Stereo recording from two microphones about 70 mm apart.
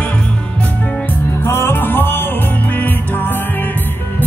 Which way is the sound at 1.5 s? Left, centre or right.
Left.